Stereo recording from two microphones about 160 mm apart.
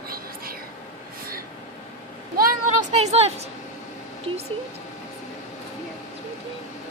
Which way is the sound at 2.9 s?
40° right (ahead or behind).